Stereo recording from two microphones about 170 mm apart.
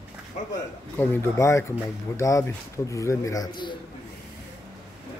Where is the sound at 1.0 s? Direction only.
15° left (ahead or behind).